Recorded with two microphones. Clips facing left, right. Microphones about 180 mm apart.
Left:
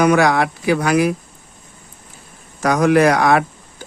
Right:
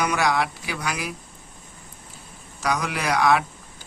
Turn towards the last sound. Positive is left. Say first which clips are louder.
# left 8 dB
turn(degrees=55)  # may be behind; listen again after turning